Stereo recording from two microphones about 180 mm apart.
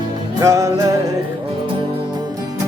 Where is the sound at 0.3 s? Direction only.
15° right (ahead or behind).